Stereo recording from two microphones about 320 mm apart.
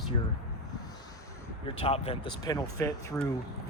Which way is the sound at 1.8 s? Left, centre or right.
Centre.